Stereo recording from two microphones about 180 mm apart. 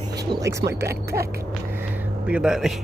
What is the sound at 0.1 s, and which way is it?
Speech, 20° right (ahead or behind).